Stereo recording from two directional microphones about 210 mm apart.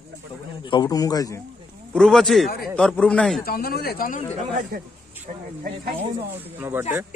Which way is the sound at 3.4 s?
45° left (ahead or behind).